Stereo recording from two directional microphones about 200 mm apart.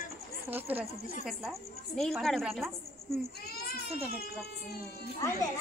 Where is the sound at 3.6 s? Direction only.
50° left (ahead or behind).